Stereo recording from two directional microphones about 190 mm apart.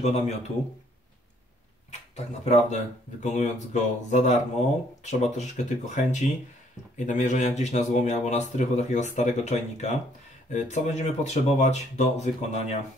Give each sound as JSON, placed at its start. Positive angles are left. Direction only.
{"t": 0.0, "sound": "speech", "side_deg": 35}
{"t": 1.9, "sound": "speech", "side_deg": 35}